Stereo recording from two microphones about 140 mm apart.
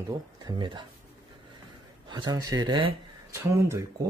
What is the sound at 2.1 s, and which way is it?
Speech, 30° right (ahead or behind).